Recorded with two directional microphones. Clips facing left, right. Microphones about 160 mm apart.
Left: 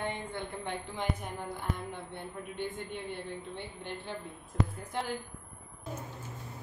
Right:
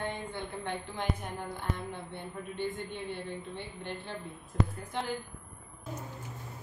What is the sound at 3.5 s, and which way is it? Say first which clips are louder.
Speech: right 1 dB; 10° left (ahead or behind).